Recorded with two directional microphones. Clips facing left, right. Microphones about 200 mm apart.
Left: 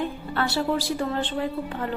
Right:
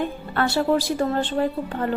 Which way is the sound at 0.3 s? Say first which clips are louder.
Right 4 dB; 50° right (ahead or behind).